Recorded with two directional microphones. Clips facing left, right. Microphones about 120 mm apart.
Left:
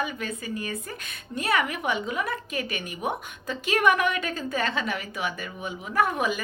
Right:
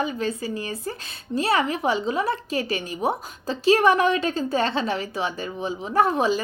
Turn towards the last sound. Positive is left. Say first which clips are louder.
# right 5 dB
turn(degrees=-30)  # may be behind; listen again after turning